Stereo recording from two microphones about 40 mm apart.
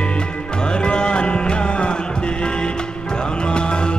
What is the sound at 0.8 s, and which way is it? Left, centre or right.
Music, left.